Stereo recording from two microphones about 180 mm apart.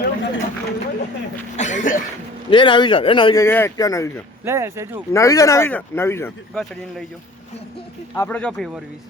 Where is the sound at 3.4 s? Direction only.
15° left (ahead or behind).